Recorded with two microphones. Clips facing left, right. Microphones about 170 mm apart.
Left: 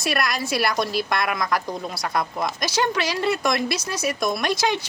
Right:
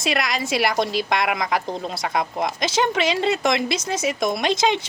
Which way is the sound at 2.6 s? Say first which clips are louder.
Right 3 dB; 25° right (ahead or behind).